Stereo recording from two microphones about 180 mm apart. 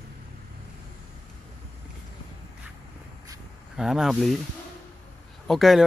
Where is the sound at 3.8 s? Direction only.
5° right (ahead or behind).